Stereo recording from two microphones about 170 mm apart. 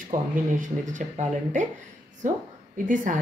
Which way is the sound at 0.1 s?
50° right (ahead or behind).